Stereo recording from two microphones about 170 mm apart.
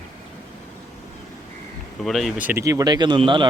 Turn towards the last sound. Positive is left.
turn(degrees=-30)  # may be behind; listen again after turning